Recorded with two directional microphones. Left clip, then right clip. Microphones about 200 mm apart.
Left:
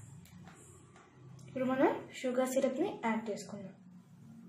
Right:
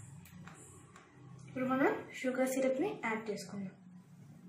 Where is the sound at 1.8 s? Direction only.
60° left (ahead or behind).